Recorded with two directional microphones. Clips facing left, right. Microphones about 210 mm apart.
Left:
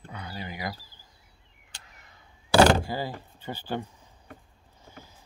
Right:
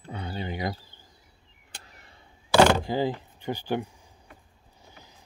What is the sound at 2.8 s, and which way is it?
Speech, 20° right (ahead or behind).